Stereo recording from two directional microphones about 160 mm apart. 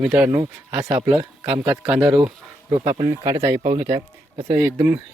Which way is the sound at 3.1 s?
20° right (ahead or behind).